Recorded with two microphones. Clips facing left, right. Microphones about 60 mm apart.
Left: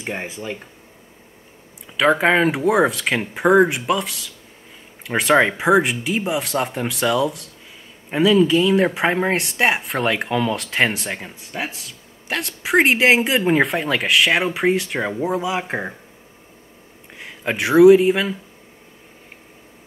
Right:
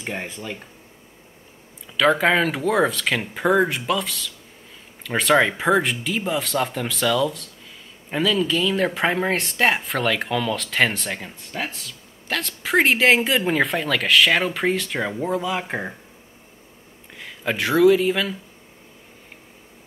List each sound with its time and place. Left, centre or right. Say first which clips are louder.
0.0 s speech: left 2 dB; centre
1.9 s speech: left 2 dB; left
17.2 s speech: left 1 dB; centre